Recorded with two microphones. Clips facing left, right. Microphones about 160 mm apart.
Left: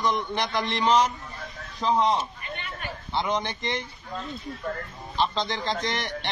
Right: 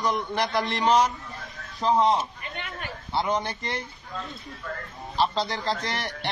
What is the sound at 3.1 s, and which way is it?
Speech, 5° right (ahead or behind).